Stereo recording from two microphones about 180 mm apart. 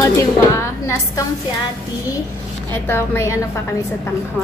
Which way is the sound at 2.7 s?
10° left (ahead or behind).